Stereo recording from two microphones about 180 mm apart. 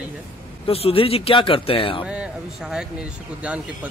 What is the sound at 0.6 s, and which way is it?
Speech, 30° left (ahead or behind).